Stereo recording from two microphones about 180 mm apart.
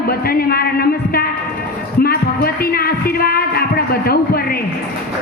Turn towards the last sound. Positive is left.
turn(degrees=55)  # may be behind; listen again after turning